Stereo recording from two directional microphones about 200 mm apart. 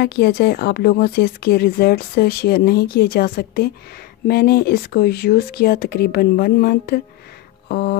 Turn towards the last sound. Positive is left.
turn(degrees=50)  # may be behind; listen again after turning